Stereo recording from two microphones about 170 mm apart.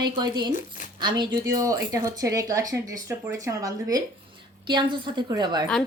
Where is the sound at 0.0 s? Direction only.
25° right (ahead or behind).